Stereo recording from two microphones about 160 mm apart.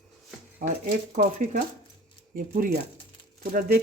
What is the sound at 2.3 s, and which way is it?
Speech, 65° right (ahead or behind).